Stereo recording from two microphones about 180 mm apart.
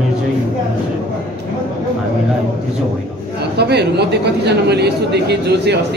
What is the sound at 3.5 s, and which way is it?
A man's voice, 65° right (ahead or behind).